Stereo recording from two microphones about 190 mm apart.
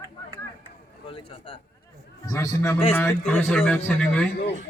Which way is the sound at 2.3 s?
15° left (ahead or behind).